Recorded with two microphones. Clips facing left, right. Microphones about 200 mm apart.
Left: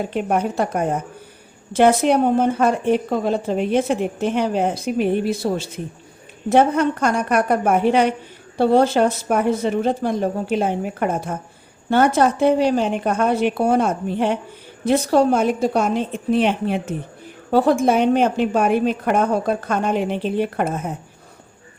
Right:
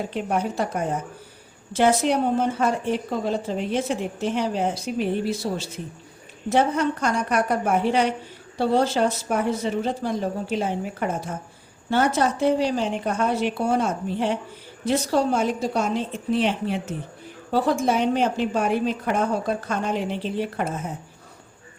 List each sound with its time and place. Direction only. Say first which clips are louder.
0.1 s a woman's voice: left 4 dB; 60° left (ahead or behind)